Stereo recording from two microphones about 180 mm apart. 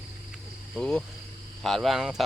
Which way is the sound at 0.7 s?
5° left (ahead or behind).